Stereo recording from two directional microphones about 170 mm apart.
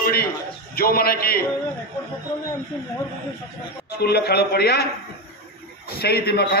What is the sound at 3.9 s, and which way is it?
Speech, 70° left (ahead or behind).